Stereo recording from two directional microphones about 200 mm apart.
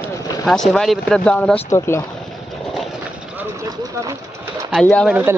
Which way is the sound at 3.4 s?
15° right (ahead or behind).